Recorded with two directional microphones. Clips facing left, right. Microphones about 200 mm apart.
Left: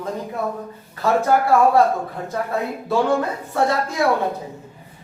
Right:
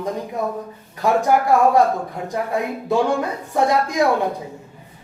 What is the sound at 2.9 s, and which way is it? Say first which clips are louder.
Speech: even; 15° right (ahead or behind).